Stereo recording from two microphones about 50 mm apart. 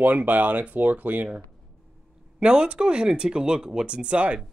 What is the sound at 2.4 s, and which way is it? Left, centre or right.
Speech, centre.